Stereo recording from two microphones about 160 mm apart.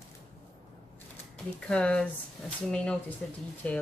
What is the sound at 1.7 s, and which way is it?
Speech, 5° left (ahead or behind).